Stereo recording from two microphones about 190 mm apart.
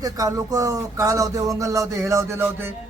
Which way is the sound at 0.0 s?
20° right (ahead or behind).